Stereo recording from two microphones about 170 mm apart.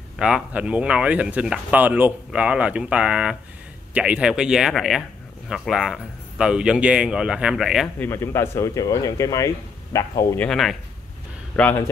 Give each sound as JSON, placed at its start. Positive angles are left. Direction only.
{"t": 0.2, "sound": "a man's voice", "side_deg": -5}
{"t": 8.0, "sound": "speech", "side_deg": 15}